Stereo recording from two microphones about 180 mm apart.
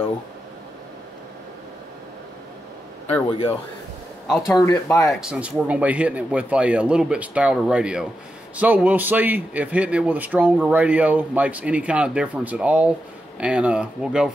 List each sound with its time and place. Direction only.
3.1 s speech: 30° left (ahead or behind)
4.5 s speech: 15° left (ahead or behind)
5.2 s speech: 5° right (ahead or behind)